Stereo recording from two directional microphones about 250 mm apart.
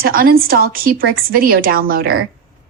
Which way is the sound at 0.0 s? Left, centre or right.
Right.